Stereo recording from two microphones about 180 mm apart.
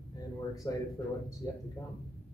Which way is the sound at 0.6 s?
20° left (ahead or behind).